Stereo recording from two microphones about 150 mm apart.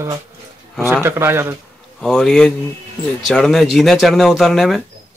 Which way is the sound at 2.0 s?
5° left (ahead or behind).